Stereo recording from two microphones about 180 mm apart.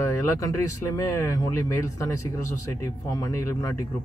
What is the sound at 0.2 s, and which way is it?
Speech, 20° left (ahead or behind).